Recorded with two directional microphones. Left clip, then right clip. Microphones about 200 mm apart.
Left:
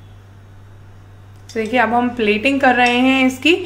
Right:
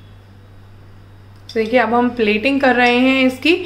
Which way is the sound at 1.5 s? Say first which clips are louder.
Right 1 dB; centre (ahead or behind).